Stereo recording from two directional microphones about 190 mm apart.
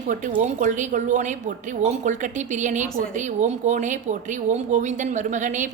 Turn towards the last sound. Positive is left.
turn(degrees=-40)  # may be behind; listen again after turning